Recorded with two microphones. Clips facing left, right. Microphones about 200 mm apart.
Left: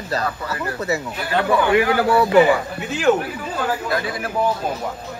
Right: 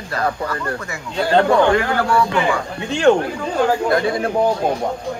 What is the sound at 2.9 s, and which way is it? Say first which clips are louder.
Speech: right 4 dB; 5° left (ahead or behind).